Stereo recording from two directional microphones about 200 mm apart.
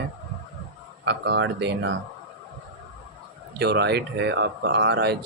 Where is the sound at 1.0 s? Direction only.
60° right (ahead or behind).